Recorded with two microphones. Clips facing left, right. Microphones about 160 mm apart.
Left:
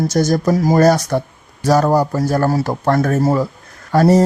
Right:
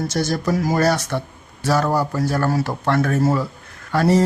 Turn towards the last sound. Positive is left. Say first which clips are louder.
# left 5 dB
turn(degrees=40)  # may be behind; listen again after turning